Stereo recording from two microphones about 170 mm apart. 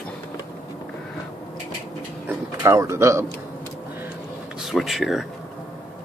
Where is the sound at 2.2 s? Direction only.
20° right (ahead or behind).